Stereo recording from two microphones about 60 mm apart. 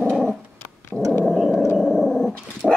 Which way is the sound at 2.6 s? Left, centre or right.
Centre.